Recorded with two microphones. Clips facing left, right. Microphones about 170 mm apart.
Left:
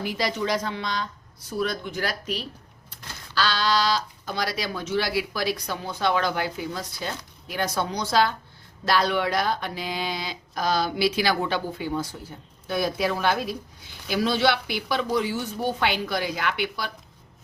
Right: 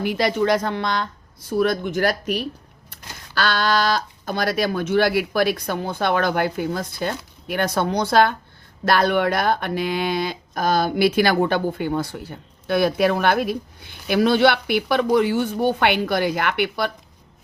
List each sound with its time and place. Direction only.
0.0 s speech: 60° right (ahead or behind)